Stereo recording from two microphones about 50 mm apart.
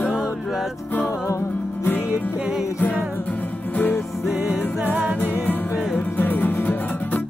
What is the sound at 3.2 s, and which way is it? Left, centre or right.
Music, left.